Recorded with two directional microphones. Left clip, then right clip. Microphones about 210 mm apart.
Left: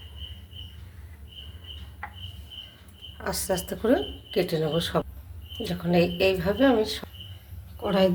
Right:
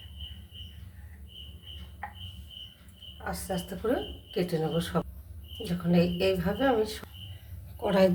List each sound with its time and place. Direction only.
3.2 s a woman's voice: 50° left (ahead or behind)
3.8 s a woman's voice: 30° left (ahead or behind)
7.8 s a sound: centre (ahead or behind)